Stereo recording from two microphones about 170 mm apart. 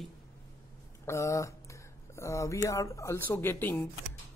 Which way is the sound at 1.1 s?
15° left (ahead or behind).